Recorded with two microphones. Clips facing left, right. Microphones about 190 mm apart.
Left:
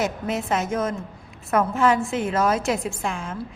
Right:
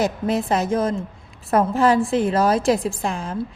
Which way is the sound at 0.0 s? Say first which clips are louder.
Right 4 dB; 35° right (ahead or behind).